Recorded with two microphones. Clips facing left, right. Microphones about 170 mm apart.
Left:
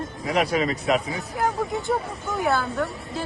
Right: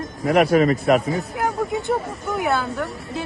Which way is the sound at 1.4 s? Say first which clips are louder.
Left 3 dB; centre (ahead or behind).